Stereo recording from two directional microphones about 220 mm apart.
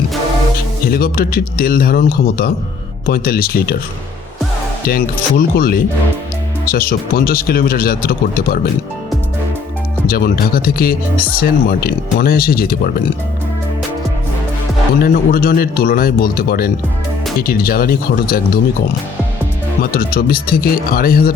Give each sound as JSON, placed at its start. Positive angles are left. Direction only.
{"t": 0.9, "sound": "speech", "side_deg": 45}
{"t": 4.9, "sound": "speech", "side_deg": 40}
{"t": 10.1, "sound": "speech", "side_deg": 40}
{"t": 15.0, "sound": "speech", "side_deg": 40}
{"t": 19.8, "sound": "speech", "side_deg": 40}